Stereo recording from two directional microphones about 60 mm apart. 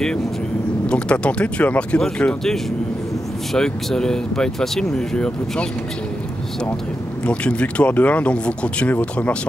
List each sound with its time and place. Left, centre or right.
0.8 s speech: centre
3.5 s speech: centre
7.2 s speech: centre